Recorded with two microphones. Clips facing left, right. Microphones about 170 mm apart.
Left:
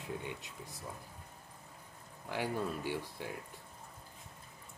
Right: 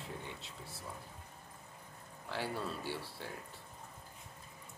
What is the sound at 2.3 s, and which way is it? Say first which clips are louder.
Speech: left 3 dB; 15° left (ahead or behind).